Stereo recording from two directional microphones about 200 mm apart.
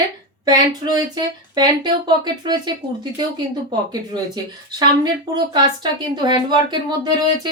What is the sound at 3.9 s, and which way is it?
Speech, 20° right (ahead or behind).